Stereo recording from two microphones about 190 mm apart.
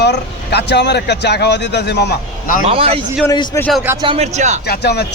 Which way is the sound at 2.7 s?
30° right (ahead or behind).